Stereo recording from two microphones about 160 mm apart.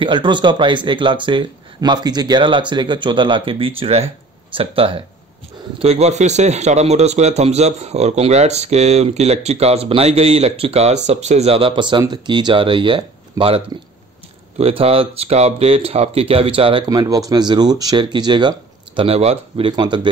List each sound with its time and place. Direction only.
0.0 s a man's voice: 30° right (ahead or behind)
14.6 s speech: 35° right (ahead or behind)
17.0 s speech: 20° right (ahead or behind)